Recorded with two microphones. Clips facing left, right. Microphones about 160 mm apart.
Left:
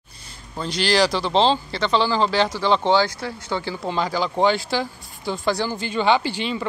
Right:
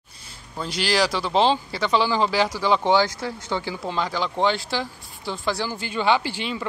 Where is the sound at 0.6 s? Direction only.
5° right (ahead or behind).